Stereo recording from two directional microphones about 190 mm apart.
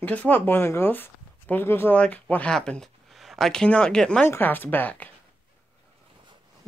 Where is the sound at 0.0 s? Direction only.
10° left (ahead or behind).